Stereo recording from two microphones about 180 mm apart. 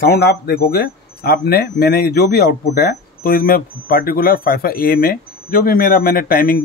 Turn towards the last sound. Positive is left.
turn(degrees=55)  # may be behind; listen again after turning